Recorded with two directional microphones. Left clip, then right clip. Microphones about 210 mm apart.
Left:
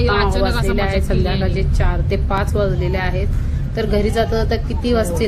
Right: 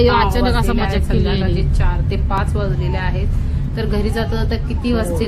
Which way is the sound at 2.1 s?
10° left (ahead or behind).